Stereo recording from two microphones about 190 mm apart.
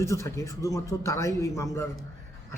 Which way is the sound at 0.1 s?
15° left (ahead or behind).